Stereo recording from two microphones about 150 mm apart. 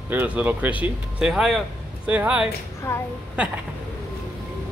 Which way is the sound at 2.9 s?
15° left (ahead or behind).